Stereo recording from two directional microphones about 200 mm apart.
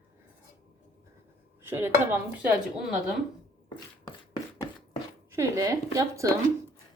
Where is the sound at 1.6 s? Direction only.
10° right (ahead or behind).